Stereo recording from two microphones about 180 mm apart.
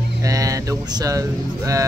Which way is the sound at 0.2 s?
20° right (ahead or behind).